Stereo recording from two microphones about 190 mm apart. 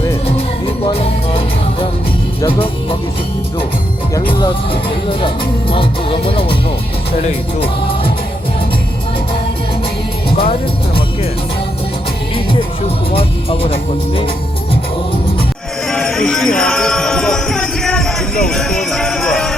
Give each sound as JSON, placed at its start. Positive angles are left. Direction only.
{"t": 0.9, "sound": "music", "side_deg": 30}
{"t": 4.3, "sound": "music", "side_deg": 25}
{"t": 10.2, "sound": "music", "side_deg": 30}
{"t": 13.1, "sound": "music", "side_deg": 30}
{"t": 15.9, "sound": "jingle bell", "side_deg": 0}